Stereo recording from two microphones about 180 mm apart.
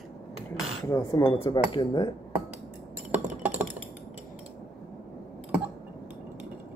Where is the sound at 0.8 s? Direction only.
15° left (ahead or behind).